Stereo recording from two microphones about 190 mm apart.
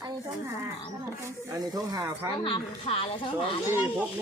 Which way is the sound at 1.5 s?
15° right (ahead or behind).